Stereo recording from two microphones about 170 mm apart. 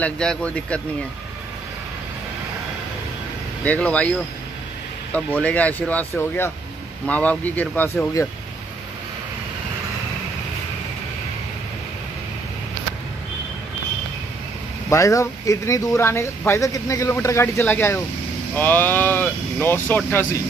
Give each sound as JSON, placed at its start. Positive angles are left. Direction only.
{"t": 0.0, "sound": "speech", "side_deg": 5}
{"t": 3.6, "sound": "speech", "side_deg": 10}
{"t": 5.1, "sound": "speech", "side_deg": 10}
{"t": 14.9, "sound": "speech", "side_deg": 20}